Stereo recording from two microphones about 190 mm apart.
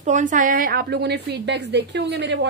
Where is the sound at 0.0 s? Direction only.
40° right (ahead or behind).